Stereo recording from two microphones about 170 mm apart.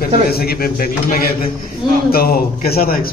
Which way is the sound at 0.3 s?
65° left (ahead or behind).